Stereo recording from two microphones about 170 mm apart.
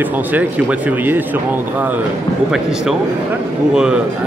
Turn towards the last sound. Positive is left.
turn(degrees=-5)  # may be behind; listen again after turning